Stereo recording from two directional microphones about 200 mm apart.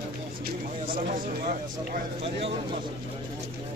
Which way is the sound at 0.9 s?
40° right (ahead or behind).